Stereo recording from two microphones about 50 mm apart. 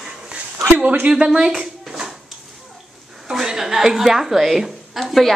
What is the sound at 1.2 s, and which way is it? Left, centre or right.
Dishes, centre.